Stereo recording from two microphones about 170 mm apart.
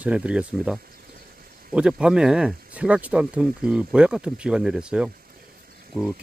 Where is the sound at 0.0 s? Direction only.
5° right (ahead or behind).